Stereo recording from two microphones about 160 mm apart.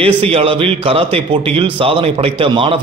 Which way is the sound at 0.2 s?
35° right (ahead or behind).